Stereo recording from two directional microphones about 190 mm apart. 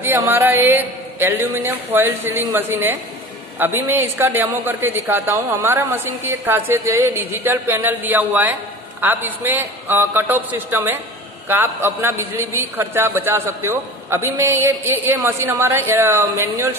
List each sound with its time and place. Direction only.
0.0 s a man's voice: 10° right (ahead or behind)